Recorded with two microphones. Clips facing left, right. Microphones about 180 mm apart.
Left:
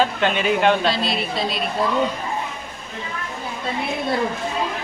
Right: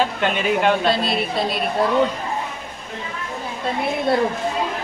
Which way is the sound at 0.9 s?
55° right (ahead or behind).